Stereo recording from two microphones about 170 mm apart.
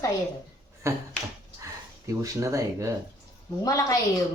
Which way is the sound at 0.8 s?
15° right (ahead or behind).